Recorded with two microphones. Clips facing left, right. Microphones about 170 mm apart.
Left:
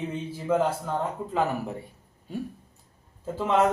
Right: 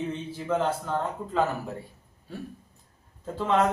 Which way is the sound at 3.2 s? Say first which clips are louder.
Left 1 dB; 10° left (ahead or behind).